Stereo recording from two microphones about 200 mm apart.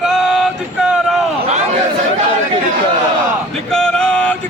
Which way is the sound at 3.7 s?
5° left (ahead or behind).